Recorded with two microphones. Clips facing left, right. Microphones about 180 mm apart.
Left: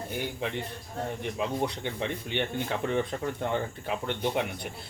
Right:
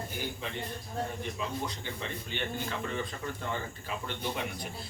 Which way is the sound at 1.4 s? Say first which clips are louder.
Left 9 dB; 65° left (ahead or behind).